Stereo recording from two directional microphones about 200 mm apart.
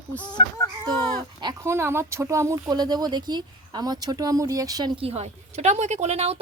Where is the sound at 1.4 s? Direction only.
15° right (ahead or behind).